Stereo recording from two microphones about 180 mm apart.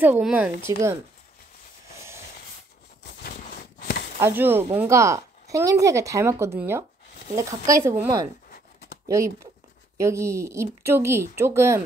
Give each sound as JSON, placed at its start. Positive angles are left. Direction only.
{"t": 0.0, "sound": "speech", "side_deg": -10}
{"t": 4.2, "sound": "speech", "side_deg": -10}